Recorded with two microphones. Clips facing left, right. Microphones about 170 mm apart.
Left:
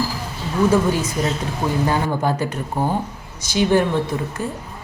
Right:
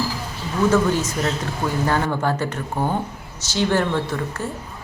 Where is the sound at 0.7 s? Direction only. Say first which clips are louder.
Left 1 dB; 10° left (ahead or behind).